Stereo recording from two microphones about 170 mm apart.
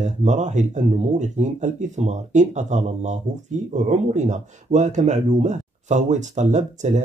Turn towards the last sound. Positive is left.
turn(degrees=-45)  # may be behind; listen again after turning